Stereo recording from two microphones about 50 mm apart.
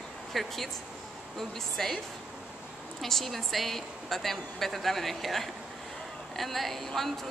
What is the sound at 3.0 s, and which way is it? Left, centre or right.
A woman's voice, centre.